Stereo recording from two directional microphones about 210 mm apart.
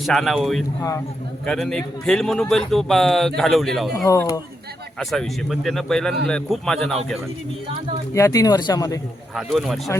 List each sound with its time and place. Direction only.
0.0 s a man's voice: centre (ahead or behind)
0.8 s speech: 15° left (ahead or behind)
1.5 s a man's voice: centre (ahead or behind)
3.9 s speech: 15° left (ahead or behind)
4.9 s a man's voice: centre (ahead or behind)
8.1 s speech: 15° left (ahead or behind)
9.3 s a man's voice: centre (ahead or behind)